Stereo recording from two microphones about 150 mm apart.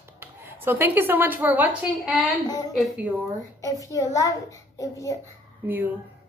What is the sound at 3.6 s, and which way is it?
A woman's voice, 20° left (ahead or behind).